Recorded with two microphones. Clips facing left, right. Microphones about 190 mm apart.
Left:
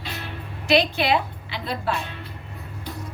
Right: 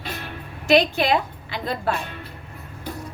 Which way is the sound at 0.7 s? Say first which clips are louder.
Right 2 dB; 45° right (ahead or behind).